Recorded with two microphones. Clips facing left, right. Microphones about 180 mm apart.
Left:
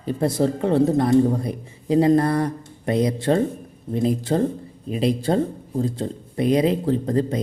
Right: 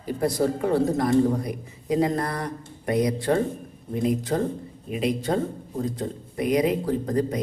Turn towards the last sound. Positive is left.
turn(degrees=25)  # may be behind; listen again after turning